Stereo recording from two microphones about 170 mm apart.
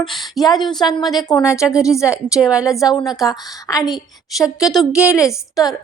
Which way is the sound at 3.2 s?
20° left (ahead or behind).